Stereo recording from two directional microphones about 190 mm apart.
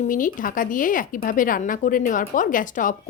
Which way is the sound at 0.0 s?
45° left (ahead or behind).